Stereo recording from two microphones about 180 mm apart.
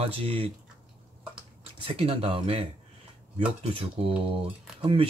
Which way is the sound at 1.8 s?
30° right (ahead or behind).